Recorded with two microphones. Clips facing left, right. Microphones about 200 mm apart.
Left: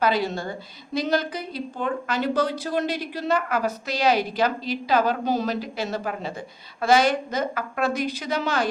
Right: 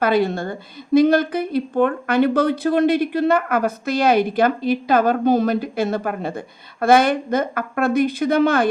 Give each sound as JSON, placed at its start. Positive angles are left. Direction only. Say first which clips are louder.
{"t": 0.0, "sound": "a woman's voice", "louder": "right 5 dB", "side_deg": -55}